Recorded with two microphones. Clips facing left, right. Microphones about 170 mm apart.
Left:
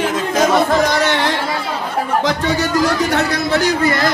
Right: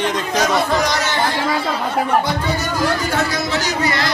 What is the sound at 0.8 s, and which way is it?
Music, 65° left (ahead or behind).